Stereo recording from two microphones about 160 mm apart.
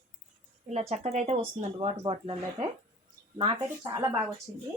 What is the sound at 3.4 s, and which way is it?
Speech, 30° right (ahead or behind).